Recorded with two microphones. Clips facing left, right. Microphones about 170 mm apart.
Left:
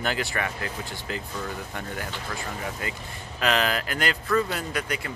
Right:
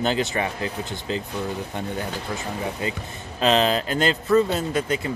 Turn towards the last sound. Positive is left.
turn(degrees=-25)  # may be behind; listen again after turning